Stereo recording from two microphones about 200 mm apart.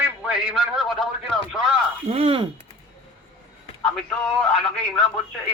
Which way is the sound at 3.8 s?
Centre (ahead or behind).